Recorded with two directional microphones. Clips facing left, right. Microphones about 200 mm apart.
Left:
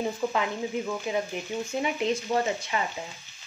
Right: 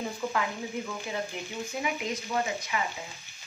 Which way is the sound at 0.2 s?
20° left (ahead or behind).